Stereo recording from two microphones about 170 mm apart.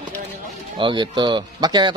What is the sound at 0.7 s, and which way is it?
Speech, 30° right (ahead or behind).